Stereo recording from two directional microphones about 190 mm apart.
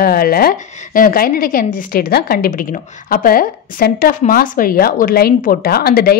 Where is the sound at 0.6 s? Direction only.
40° left (ahead or behind).